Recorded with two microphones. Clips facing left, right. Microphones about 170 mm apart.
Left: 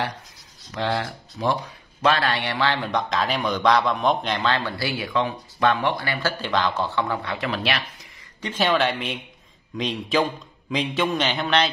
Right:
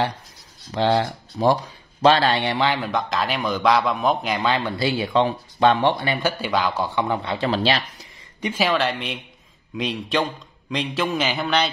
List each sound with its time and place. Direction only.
0.7 s speech: 25° right (ahead or behind)
2.8 s a man's voice: centre (ahead or behind); by 8.1 s 30° right (ahead or behind)
8.4 s speech: 10° right (ahead or behind)
8.6 s a man's voice: centre (ahead or behind)